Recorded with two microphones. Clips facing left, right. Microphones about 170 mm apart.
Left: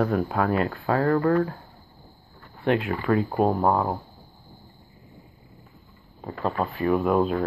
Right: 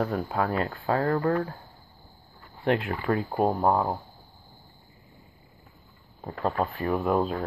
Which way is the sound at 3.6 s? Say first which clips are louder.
Left 1 dB; 15° right (ahead or behind).